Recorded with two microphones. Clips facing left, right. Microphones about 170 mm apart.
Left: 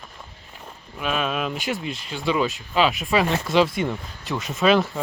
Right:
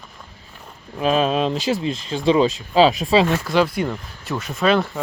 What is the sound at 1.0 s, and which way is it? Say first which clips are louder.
Speech: right 7 dB; 30° right (ahead or behind).